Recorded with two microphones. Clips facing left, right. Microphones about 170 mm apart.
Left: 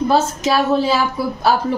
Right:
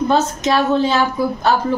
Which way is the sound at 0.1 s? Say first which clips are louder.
Even; 5° left (ahead or behind).